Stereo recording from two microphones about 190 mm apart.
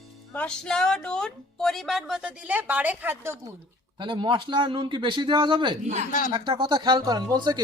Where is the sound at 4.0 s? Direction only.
25° right (ahead or behind).